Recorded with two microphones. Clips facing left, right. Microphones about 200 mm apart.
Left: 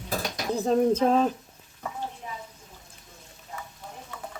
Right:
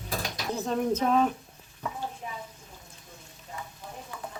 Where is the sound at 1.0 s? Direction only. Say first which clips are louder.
Left 2 dB; 35° left (ahead or behind).